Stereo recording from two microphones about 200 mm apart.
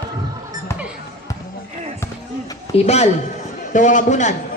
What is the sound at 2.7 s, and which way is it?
A man's voice, 35° left (ahead or behind).